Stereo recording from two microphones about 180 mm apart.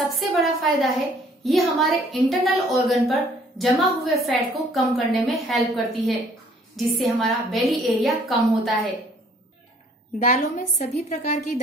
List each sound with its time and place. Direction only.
0.0 s a woman's voice: centre (ahead or behind)
6.8 s a woman's voice: centre (ahead or behind)
10.1 s a woman's voice: 40° left (ahead or behind)